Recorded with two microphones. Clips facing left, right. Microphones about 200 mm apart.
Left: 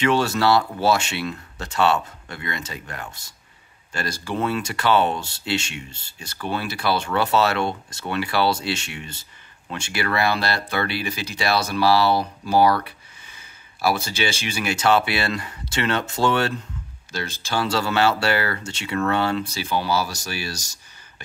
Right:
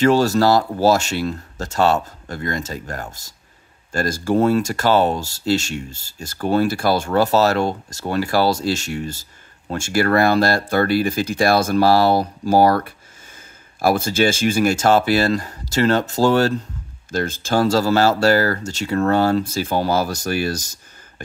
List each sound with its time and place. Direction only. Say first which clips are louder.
0.0 s speech: right 5 dB; 40° right (ahead or behind)
17.1 s speech: right 7 dB; 50° right (ahead or behind)